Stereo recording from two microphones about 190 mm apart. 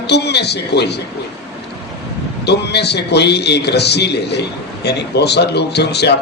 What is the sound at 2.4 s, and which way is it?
A man's voice, 60° left (ahead or behind).